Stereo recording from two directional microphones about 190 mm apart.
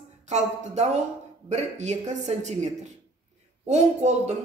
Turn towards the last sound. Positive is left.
turn(degrees=-35)  # may be behind; listen again after turning